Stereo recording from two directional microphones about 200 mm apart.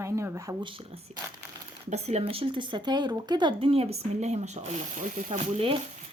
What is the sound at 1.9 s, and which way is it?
Speech, 35° right (ahead or behind).